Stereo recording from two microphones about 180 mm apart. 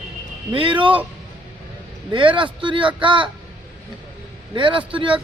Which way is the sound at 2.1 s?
30° right (ahead or behind).